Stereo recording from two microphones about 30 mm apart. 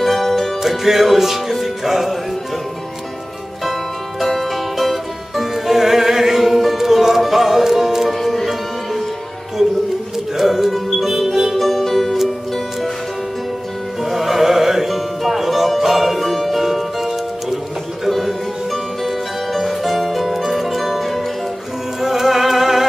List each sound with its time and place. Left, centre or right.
0.0 s music: centre
0.6 s music: centre
4.2 s music: centre
10.3 s music: centre
11.5 s music: centre
14.0 s music: centre
22.0 s music: centre